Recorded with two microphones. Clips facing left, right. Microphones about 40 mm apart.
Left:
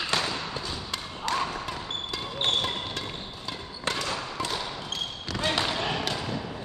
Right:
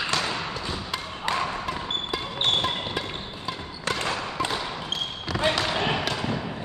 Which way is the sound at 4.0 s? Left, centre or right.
Right.